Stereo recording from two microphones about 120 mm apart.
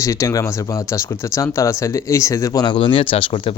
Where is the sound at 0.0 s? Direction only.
25° left (ahead or behind).